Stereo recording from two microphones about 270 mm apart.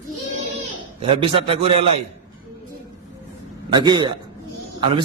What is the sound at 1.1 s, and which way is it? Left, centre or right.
Speech, right.